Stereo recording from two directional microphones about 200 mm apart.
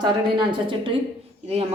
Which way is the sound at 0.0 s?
25° right (ahead or behind).